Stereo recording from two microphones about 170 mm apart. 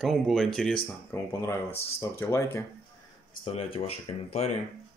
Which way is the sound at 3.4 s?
35° left (ahead or behind).